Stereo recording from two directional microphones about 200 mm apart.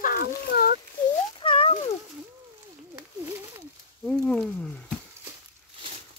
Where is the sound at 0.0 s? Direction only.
45° left (ahead or behind).